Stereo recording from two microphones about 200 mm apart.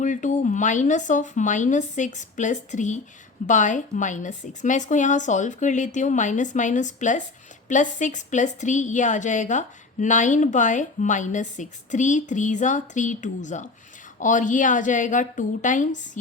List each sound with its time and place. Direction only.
0.0 s a woman's voice: 40° left (ahead or behind)